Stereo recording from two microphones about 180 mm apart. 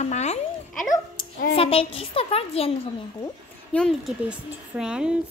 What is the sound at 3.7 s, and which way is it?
A child's voice, 5° left (ahead or behind).